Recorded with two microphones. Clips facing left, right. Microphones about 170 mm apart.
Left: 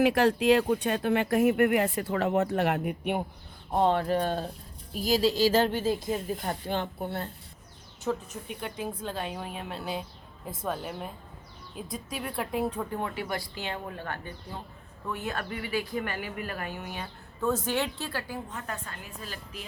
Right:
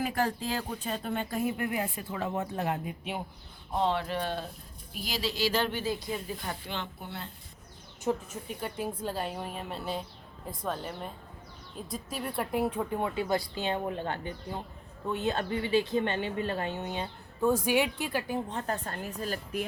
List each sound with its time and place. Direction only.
0.0 s speech: 85° left; by 3.2 s 60° left (ahead or behind)
3.7 s a woman's voice: 50° left (ahead or behind)
8.1 s speech: 20° right (ahead or behind)
8.6 s a woman's voice: 5° right (ahead or behind)
13.0 s speech: 20° right (ahead or behind); by 19.6 s 45° right (ahead or behind)